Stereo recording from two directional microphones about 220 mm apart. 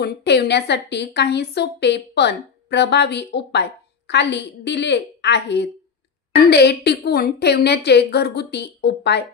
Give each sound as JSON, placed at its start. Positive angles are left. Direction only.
{"t": 0.0, "sound": "a woman's voice", "side_deg": 50}